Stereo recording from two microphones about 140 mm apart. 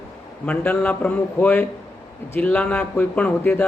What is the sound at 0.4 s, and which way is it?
Speech, 10° left (ahead or behind).